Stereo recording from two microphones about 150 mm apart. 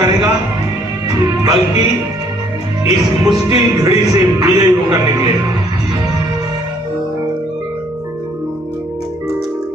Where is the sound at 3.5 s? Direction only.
25° right (ahead or behind).